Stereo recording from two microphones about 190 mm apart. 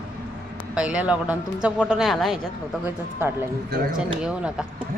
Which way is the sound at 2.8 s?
10° right (ahead or behind).